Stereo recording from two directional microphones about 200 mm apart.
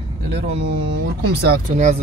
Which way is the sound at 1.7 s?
35° right (ahead or behind).